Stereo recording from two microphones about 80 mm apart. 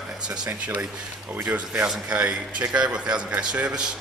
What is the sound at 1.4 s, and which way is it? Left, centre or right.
A man's voice, centre.